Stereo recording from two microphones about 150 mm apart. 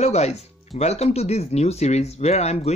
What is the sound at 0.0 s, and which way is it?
Speech, 45° left (ahead or behind).